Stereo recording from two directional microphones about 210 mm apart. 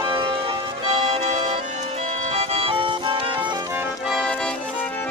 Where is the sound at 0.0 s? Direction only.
20° right (ahead or behind).